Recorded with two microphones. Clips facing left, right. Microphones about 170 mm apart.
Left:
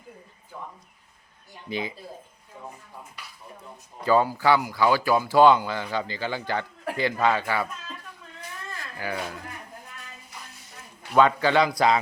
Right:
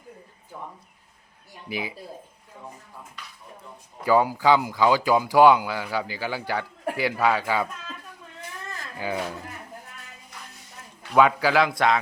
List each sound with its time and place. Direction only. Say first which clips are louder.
1.7 s speech: left 1 dB; 10° right (ahead or behind)
4.0 s speech: right 1 dB; 10° right (ahead or behind)
9.0 s speech: right 3 dB; 20° right (ahead or behind)
11.2 s speech: even; 10° right (ahead or behind)